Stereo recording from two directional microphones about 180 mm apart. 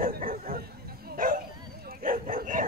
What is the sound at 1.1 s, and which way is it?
Bow-wow, 50° right (ahead or behind).